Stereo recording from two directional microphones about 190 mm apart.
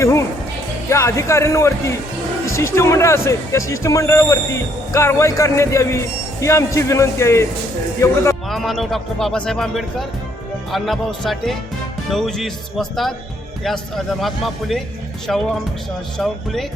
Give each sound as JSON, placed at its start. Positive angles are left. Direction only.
{"t": 0.0, "sound": "music", "side_deg": 15}
{"t": 0.9, "sound": "speech", "side_deg": 15}
{"t": 8.4, "sound": "a man's voice", "side_deg": 0}